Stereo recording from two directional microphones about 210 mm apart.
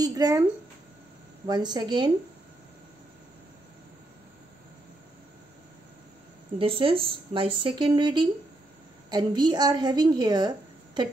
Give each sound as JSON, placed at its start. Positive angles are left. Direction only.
{"t": 0.0, "sound": "speech", "side_deg": -15}
{"t": 1.5, "sound": "speech", "side_deg": -20}
{"t": 6.6, "sound": "speech", "side_deg": -25}